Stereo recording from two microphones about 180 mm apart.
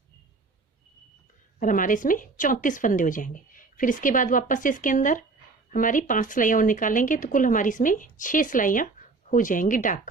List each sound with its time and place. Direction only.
1.5 s speech: 50° left (ahead or behind)